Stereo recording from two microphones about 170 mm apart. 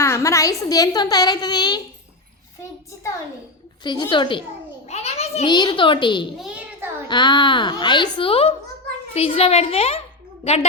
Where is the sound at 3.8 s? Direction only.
25° left (ahead or behind).